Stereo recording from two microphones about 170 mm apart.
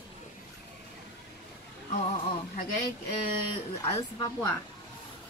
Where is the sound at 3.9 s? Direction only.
20° left (ahead or behind).